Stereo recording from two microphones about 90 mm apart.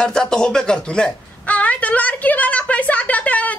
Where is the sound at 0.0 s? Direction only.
10° left (ahead or behind).